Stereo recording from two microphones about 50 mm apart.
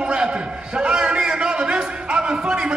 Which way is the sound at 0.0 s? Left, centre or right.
Right.